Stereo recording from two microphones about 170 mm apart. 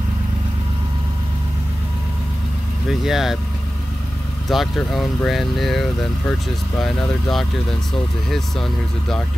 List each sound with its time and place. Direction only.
2.9 s speech: centre (ahead or behind)
4.5 s speech: centre (ahead or behind)